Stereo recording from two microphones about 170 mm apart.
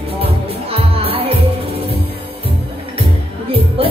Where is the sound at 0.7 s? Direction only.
35° right (ahead or behind).